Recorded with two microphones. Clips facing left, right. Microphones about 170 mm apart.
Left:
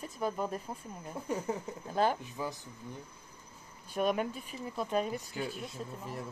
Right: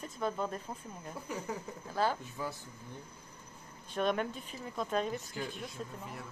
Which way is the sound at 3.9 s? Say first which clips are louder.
Left 1 dB; 10° left (ahead or behind).